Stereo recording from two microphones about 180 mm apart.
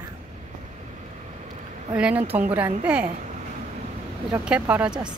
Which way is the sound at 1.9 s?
5° right (ahead or behind).